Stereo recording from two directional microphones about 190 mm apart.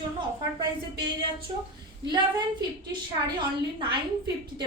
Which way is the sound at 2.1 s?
20° right (ahead or behind).